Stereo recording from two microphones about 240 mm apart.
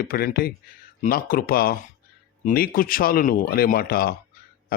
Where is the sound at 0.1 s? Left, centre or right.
Left.